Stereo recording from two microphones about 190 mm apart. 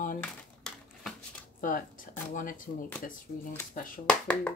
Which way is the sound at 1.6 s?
45° left (ahead or behind).